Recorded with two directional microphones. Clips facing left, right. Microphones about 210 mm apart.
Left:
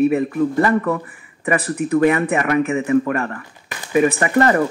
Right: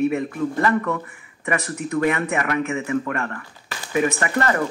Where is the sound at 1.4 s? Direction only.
30° left (ahead or behind).